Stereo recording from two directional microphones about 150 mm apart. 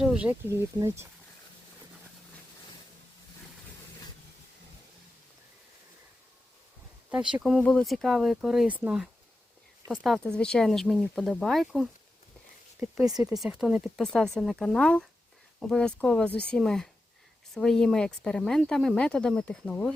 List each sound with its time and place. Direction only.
0.0 s a sound: 5° right (ahead or behind)
0.3 s speech: 20° right (ahead or behind)
7.1 s speech: 5° right (ahead or behind)